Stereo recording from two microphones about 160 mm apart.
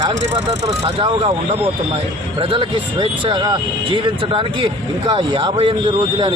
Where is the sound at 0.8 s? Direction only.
35° right (ahead or behind).